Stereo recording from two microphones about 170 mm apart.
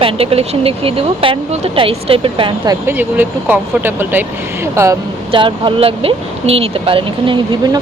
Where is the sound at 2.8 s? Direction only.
10° right (ahead or behind).